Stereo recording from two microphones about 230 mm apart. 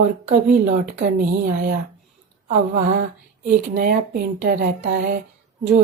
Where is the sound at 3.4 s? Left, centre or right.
Right.